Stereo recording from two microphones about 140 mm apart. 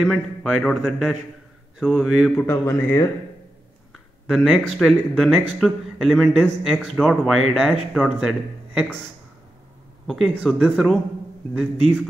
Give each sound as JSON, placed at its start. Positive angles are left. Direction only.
{"t": 0.0, "sound": "speech", "side_deg": 0}
{"t": 2.3, "sound": "a man's voice", "side_deg": 20}
{"t": 3.9, "sound": "speech", "side_deg": 0}
{"t": 10.0, "sound": "speech", "side_deg": 5}